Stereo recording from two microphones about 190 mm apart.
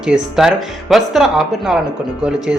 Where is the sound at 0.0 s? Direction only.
5° right (ahead or behind).